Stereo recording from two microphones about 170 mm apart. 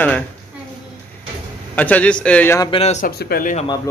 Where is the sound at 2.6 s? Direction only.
35° left (ahead or behind).